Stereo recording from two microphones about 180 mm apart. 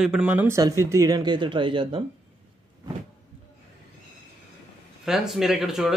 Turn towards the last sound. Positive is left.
turn(degrees=0)  # may be behind; listen again after turning